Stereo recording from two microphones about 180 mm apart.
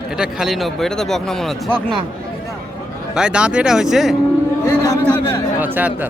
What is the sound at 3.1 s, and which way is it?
Speech, 5° right (ahead or behind).